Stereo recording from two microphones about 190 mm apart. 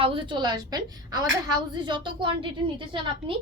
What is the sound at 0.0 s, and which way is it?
A woman's voice, 25° right (ahead or behind).